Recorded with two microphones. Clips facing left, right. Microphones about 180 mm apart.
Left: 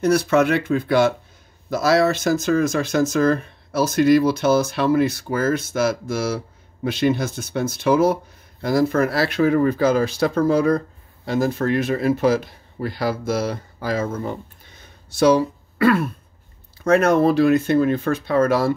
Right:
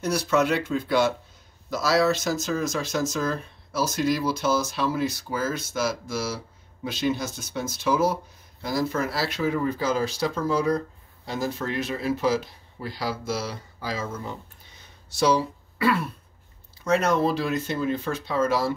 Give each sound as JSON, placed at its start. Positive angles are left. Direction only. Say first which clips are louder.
{"t": 0.0, "sound": "speech", "louder": "left 6 dB", "side_deg": 55}